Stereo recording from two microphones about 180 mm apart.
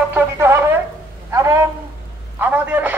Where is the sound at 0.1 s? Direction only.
15° right (ahead or behind).